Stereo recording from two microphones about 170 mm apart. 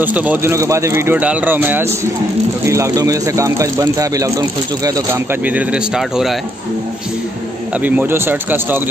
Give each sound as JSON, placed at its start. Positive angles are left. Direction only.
{"t": 0.0, "sound": "speech", "side_deg": -10}
{"t": 7.7, "sound": "speech", "side_deg": -10}